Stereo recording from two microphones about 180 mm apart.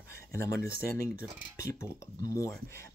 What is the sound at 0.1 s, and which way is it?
Speech, 15° left (ahead or behind).